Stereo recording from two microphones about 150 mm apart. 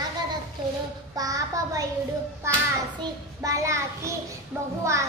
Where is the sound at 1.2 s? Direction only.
25° right (ahead or behind).